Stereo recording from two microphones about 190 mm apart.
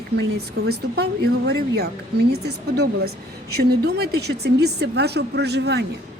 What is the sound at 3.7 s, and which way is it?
Speech, 55° right (ahead or behind).